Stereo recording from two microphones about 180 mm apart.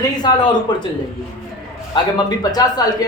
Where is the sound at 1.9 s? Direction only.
20° left (ahead or behind).